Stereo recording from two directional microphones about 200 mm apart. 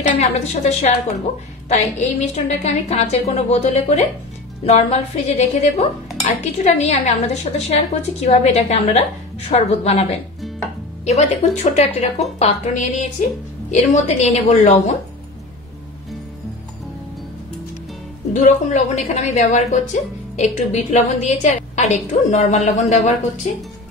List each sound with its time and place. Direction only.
0.2 s a woman's voice: 35° left (ahead or behind)
2.0 s a woman's voice: 35° left (ahead or behind)
11.1 s a woman's voice: 35° left (ahead or behind)
18.3 s a woman's voice: 40° left (ahead or behind)